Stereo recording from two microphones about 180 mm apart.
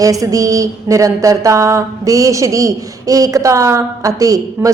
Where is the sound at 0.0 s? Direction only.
20° right (ahead or behind).